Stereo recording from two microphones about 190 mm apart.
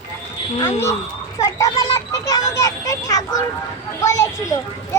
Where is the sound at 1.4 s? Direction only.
15° left (ahead or behind).